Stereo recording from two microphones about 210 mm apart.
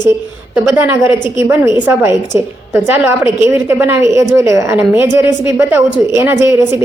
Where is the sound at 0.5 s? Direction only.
10° right (ahead or behind).